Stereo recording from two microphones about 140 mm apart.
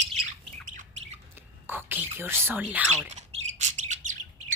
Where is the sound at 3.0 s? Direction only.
55° right (ahead or behind).